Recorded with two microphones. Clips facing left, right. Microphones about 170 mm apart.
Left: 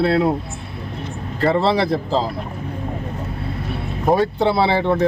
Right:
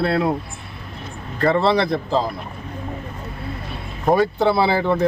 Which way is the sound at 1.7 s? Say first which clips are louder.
Even; 5° left (ahead or behind).